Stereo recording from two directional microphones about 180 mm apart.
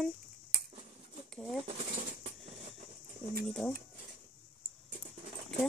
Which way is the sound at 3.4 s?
5° left (ahead or behind).